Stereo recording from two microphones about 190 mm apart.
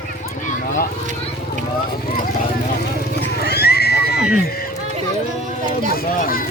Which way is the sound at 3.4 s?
55° left (ahead or behind).